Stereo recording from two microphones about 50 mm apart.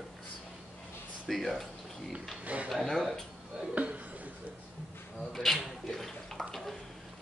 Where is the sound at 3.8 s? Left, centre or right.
Right.